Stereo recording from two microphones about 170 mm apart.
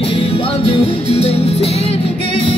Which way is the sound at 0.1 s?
35° left (ahead or behind).